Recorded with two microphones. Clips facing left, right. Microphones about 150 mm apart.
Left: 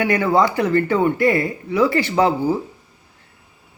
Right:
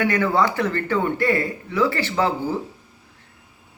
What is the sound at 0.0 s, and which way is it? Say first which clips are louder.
A man's voice: left 3 dB; 15° left (ahead or behind).